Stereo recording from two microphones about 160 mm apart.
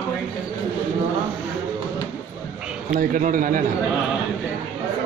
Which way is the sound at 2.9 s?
55° right (ahead or behind).